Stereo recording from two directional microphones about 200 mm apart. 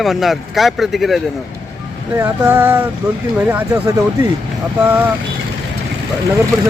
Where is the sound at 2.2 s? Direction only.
10° right (ahead or behind).